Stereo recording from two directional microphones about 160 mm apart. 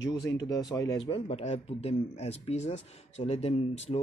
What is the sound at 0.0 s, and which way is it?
Speech, 90° left.